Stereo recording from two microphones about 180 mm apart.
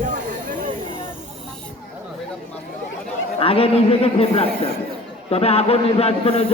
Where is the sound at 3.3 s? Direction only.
30° left (ahead or behind).